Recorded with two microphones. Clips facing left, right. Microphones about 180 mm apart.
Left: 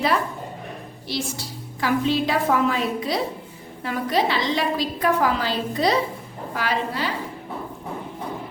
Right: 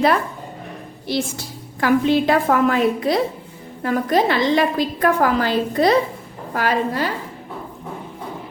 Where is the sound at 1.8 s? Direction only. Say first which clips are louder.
Right 5 dB; 55° right (ahead or behind).